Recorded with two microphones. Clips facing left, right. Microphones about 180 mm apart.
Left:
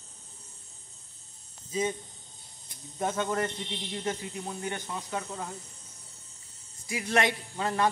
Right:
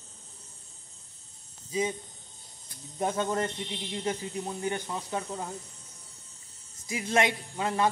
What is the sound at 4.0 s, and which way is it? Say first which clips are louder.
Speech: right 2 dB; 20° right (ahead or behind).